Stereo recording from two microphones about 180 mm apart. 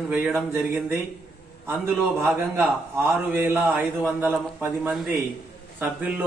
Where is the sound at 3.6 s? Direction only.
Centre (ahead or behind).